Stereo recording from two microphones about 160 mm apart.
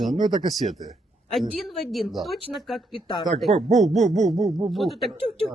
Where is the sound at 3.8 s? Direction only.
Centre (ahead or behind).